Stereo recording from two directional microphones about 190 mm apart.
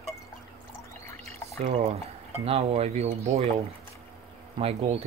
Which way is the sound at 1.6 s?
35° right (ahead or behind).